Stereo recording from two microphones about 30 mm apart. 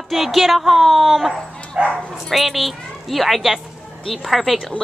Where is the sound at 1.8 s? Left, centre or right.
Right.